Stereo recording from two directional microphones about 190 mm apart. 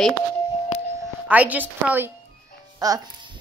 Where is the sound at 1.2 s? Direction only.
10° right (ahead or behind).